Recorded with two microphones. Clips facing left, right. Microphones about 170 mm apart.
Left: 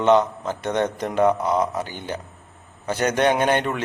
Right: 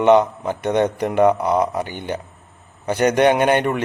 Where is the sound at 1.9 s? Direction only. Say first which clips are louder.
Right 4 dB; 60° right (ahead or behind).